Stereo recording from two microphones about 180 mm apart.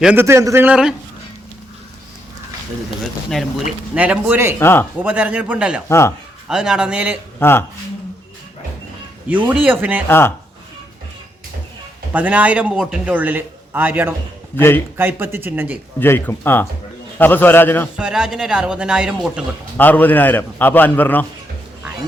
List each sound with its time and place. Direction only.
0.0 s a man's voice: 10° right (ahead or behind)
3.0 s a man's voice: centre (ahead or behind)
4.6 s a man's voice: 15° left (ahead or behind)
4.9 s a man's voice: 5° right (ahead or behind)
5.9 s a man's voice: 15° left (ahead or behind)
6.5 s speech: 5° right (ahead or behind)
7.3 s speech: 15° left (ahead or behind)
9.3 s a man's voice: 10° right (ahead or behind)
10.1 s a man's voice: 15° left (ahead or behind)
12.1 s a man's voice: 10° right (ahead or behind)
16.0 s a man's voice: 10° left (ahead or behind)
17.9 s speech: 5° right (ahead or behind)
19.7 s a man's voice: 10° left (ahead or behind)